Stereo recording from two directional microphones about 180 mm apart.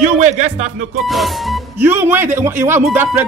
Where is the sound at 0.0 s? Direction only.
40° right (ahead or behind).